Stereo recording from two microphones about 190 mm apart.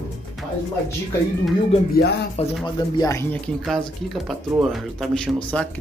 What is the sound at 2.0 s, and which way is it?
Speech, 60° left (ahead or behind).